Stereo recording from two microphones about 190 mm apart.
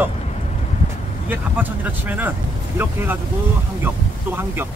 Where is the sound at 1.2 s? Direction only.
10° right (ahead or behind).